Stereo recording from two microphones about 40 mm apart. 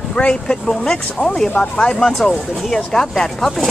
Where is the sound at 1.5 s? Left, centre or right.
Left.